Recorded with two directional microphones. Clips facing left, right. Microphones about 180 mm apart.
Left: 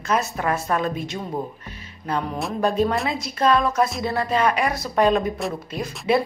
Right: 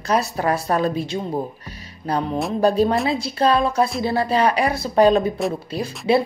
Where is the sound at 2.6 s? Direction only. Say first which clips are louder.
Right 3 dB; 35° right (ahead or behind).